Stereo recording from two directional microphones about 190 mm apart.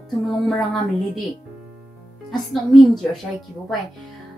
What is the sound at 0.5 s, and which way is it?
Speech, centre (ahead or behind).